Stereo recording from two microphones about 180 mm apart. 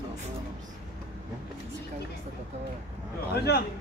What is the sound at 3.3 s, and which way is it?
Speech, 60° left (ahead or behind).